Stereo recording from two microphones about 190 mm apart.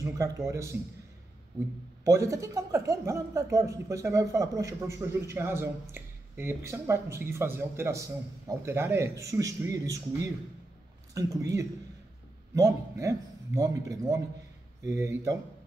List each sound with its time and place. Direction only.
0.0 s a woman's voice: 15° right (ahead or behind)
2.0 s a woman's voice: 15° right (ahead or behind)
11.1 s a woman's voice: 15° right (ahead or behind)